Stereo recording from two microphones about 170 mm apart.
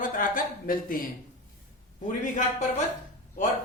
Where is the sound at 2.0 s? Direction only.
50° left (ahead or behind).